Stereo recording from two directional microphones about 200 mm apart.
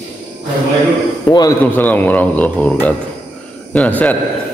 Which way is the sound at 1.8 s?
10° left (ahead or behind).